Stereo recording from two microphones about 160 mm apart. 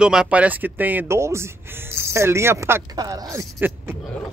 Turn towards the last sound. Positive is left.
turn(degrees=-15)  # may be behind; listen again after turning